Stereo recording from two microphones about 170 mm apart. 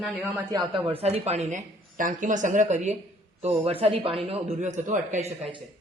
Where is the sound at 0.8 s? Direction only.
35° right (ahead or behind).